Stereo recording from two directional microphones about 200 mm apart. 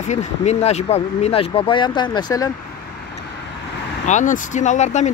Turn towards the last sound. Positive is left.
turn(degrees=35)  # may be behind; listen again after turning